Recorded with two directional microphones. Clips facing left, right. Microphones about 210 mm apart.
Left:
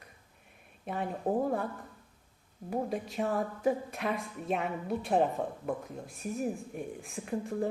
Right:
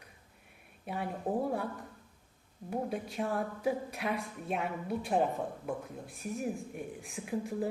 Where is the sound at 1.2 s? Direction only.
20° left (ahead or behind).